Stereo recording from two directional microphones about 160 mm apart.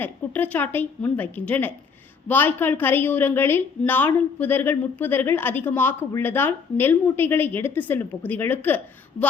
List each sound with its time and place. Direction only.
0.0 s a woman's voice: 10° left (ahead or behind)